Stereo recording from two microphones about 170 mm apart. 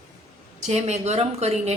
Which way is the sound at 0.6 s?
40° right (ahead or behind).